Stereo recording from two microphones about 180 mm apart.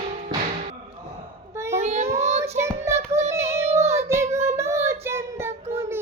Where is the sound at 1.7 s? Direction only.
35° right (ahead or behind).